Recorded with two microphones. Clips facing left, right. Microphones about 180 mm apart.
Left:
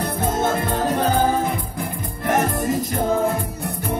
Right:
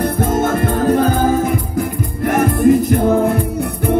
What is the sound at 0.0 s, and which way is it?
Music, 55° right (ahead or behind).